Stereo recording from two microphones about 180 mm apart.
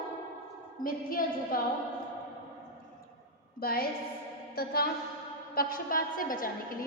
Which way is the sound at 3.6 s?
55° left (ahead or behind).